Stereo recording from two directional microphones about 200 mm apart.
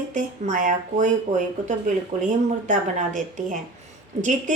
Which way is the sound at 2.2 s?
40° right (ahead or behind).